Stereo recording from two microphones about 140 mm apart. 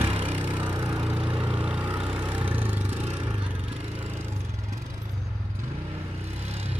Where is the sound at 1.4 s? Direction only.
10° right (ahead or behind).